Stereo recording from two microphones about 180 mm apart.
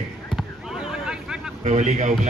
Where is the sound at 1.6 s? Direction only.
40° right (ahead or behind).